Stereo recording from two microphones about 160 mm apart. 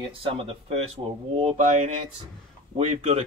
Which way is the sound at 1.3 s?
45° right (ahead or behind).